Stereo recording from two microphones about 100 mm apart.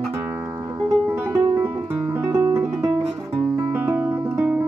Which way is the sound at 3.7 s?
20° right (ahead or behind).